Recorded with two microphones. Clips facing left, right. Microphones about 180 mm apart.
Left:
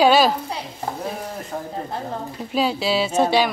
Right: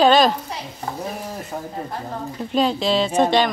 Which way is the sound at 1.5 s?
5° right (ahead or behind).